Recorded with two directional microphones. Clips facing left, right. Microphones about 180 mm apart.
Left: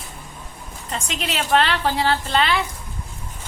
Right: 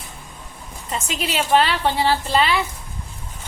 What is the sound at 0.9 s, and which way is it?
A woman's voice, 5° right (ahead or behind).